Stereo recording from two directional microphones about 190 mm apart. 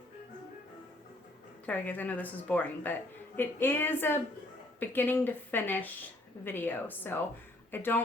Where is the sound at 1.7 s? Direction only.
10° left (ahead or behind).